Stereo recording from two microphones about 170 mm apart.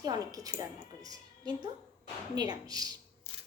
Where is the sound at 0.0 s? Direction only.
20° right (ahead or behind).